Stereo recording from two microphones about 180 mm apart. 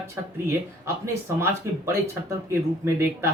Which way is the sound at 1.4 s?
15° right (ahead or behind).